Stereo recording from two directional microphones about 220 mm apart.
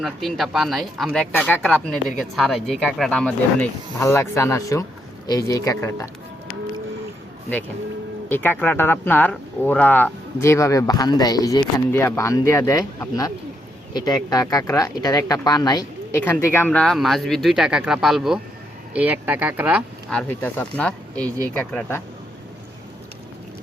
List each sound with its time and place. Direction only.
0.0 s speech: centre (ahead or behind)
8.3 s speech: 10° left (ahead or behind); by 19.8 s 5° right (ahead or behind)
20.1 s speech: 5° left (ahead or behind)